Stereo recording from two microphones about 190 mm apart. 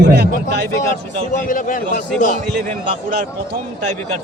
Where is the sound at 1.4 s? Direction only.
45° left (ahead or behind).